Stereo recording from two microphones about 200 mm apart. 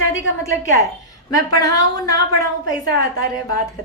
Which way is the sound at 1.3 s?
20° left (ahead or behind).